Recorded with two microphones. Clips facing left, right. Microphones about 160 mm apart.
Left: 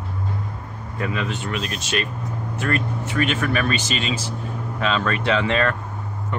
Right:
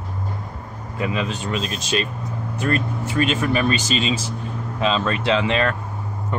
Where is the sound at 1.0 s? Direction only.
20° right (ahead or behind).